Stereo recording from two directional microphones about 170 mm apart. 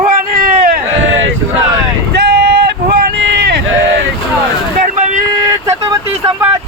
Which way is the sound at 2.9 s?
65° right (ahead or behind).